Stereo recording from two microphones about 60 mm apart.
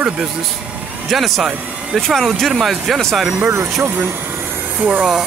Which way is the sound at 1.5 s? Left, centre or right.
Right.